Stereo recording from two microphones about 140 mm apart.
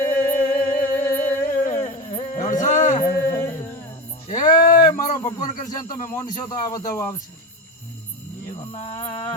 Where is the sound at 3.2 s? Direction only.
20° left (ahead or behind).